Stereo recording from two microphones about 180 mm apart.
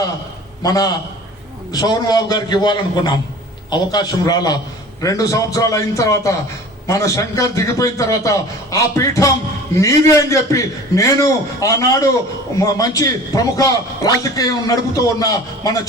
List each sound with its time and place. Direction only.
0.6 s a man's voice: 20° left (ahead or behind)